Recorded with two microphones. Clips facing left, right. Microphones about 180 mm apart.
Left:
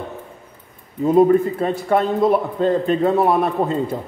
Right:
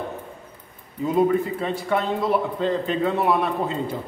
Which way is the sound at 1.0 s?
45° left (ahead or behind).